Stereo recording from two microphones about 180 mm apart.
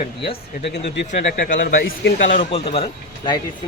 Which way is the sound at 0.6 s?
70° left (ahead or behind).